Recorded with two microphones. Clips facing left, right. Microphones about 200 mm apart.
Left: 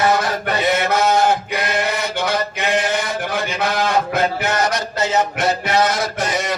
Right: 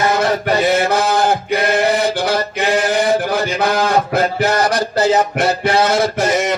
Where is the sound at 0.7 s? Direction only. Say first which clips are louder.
Right 2 dB; 30° right (ahead or behind).